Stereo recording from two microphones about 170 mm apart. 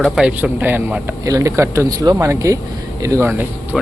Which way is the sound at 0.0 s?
5° right (ahead or behind).